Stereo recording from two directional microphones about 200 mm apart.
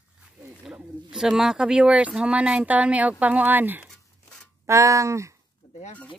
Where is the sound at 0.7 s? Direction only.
5° right (ahead or behind).